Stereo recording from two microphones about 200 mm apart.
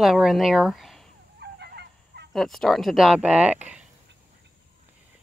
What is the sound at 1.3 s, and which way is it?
Goose, 55° right (ahead or behind).